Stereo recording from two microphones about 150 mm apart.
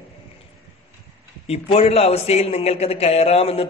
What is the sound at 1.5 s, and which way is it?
A man's voice, 40° left (ahead or behind).